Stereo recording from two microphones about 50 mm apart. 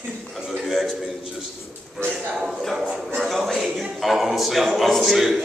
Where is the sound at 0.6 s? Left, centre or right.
Centre.